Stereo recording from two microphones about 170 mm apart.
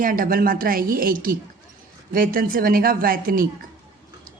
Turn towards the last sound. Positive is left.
turn(degrees=-60)  # may be behind; listen again after turning